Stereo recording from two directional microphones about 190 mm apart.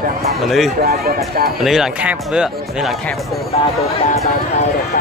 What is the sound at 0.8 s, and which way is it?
Speech, 50° right (ahead or behind).